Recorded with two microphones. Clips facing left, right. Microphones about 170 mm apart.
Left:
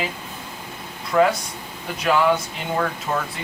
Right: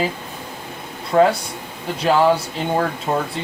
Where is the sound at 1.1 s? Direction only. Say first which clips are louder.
Right 3 dB; 30° right (ahead or behind).